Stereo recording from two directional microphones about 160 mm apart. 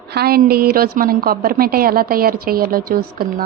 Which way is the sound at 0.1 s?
70° right (ahead or behind).